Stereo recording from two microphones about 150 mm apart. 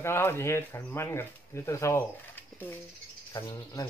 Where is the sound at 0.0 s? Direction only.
15° left (ahead or behind).